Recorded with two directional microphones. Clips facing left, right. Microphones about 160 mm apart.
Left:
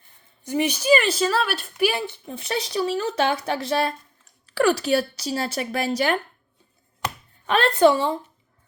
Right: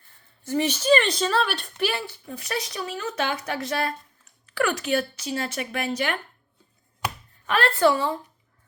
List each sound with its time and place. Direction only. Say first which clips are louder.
0.4 s a woman's voice: left 1 dB; 15° left (ahead or behind)
1.9 s a woman's voice: left 3 dB; 20° left (ahead or behind); by 6.1 s 35° left (ahead or behind)
7.4 s speech: left 4 dB; 25° left (ahead or behind)